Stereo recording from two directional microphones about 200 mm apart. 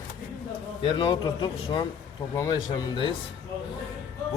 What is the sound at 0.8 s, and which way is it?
A man's voice, 25° left (ahead or behind).